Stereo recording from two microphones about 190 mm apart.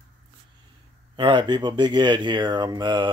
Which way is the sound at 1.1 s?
25° right (ahead or behind).